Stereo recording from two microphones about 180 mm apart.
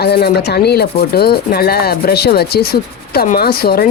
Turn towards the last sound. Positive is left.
turn(degrees=60)  # may be behind; listen again after turning